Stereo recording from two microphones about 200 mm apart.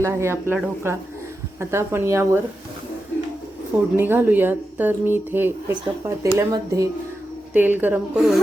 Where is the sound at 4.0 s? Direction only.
10° right (ahead or behind).